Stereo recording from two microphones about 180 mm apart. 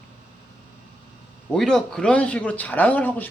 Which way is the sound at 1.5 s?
5° left (ahead or behind).